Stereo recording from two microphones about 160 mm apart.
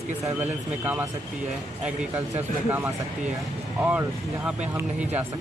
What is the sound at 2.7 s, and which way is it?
Speech, 10° right (ahead or behind).